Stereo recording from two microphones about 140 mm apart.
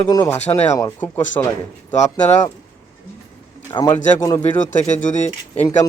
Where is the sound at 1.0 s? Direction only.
15° left (ahead or behind).